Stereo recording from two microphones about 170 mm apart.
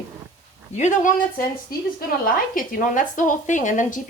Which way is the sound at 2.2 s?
55° left (ahead or behind).